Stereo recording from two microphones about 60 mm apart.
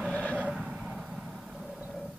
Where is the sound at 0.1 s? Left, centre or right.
Left.